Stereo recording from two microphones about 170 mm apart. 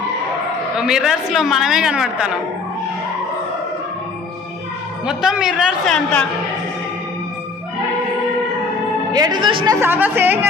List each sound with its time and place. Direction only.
0.8 s a woman's voice: 5° right (ahead or behind)
5.0 s a woman's voice: 5° right (ahead or behind)
9.1 s speech: 25° right (ahead or behind)
9.8 s speech: 10° right (ahead or behind)